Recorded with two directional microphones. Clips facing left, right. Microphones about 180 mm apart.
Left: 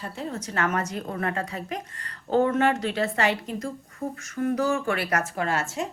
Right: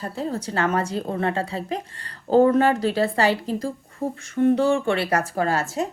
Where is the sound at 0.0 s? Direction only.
35° right (ahead or behind).